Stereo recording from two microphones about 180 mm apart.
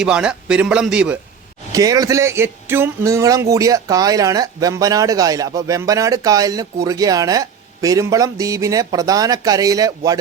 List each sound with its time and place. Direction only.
0.0 s speech: 5° right (ahead or behind)
1.7 s speech: 20° right (ahead or behind)